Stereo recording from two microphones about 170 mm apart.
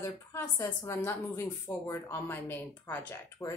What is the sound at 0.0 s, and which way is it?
A woman's voice, 15° left (ahead or behind).